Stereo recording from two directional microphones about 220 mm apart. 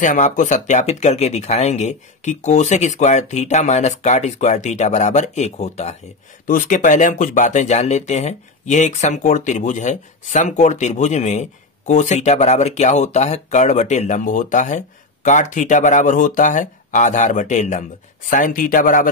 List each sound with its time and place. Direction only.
0.0 s speech: 35° left (ahead or behind)